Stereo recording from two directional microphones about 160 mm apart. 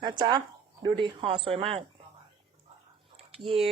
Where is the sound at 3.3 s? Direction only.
35° right (ahead or behind).